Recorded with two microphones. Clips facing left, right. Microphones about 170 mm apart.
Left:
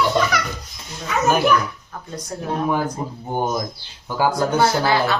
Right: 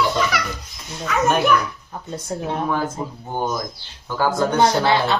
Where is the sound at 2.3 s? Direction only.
25° right (ahead or behind).